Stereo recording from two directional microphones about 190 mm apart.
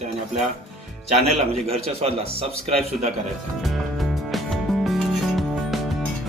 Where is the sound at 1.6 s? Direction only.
30° right (ahead or behind).